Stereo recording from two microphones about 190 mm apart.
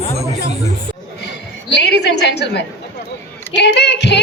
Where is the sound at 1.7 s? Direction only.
60° left (ahead or behind).